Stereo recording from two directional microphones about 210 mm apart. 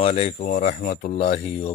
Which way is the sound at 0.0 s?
30° left (ahead or behind).